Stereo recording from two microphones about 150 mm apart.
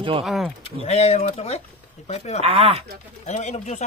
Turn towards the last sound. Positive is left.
turn(degrees=50)  # may be behind; listen again after turning